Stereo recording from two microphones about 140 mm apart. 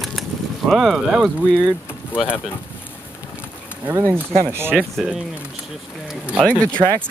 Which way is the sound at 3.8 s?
20° right (ahead or behind).